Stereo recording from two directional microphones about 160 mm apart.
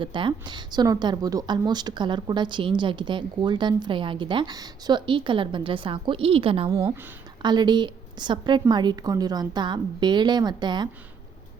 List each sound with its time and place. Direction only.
0.0 s speech: 30° right (ahead or behind)
6.7 s speech: 20° right (ahead or behind)